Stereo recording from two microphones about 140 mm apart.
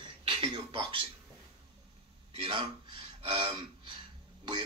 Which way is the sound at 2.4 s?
35° right (ahead or behind).